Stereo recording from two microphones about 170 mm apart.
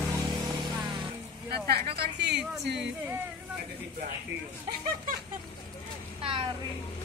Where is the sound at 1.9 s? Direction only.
70° right (ahead or behind).